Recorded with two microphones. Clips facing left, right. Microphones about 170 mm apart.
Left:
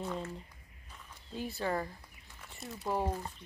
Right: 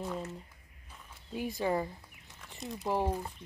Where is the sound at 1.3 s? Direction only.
15° right (ahead or behind).